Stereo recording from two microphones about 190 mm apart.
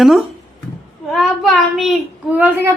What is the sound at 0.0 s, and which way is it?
Speech, centre (ahead or behind).